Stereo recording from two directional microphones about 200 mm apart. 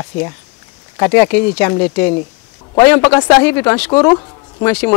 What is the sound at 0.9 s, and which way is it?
Speech, 15° left (ahead or behind).